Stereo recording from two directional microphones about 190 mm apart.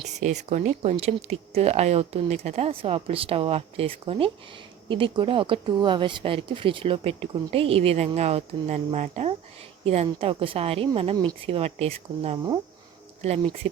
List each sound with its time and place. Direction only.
0.1 s speech: 40° right (ahead or behind)